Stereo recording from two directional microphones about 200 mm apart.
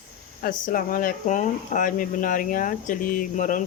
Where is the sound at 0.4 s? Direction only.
45° left (ahead or behind).